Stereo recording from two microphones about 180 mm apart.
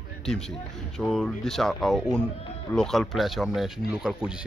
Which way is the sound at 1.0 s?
5° left (ahead or behind).